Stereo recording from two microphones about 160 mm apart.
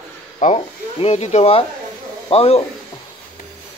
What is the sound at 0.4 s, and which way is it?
Speech, 40° left (ahead or behind).